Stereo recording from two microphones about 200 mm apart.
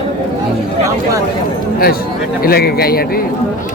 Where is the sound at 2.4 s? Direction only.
50° left (ahead or behind).